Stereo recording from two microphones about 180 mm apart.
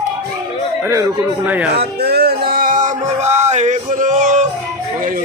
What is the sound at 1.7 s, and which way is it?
Music, 65° right (ahead or behind).